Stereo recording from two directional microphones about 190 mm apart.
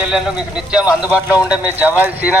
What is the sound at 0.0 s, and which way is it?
Speech, 5° right (ahead or behind).